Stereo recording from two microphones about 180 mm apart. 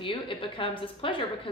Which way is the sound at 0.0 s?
30° left (ahead or behind).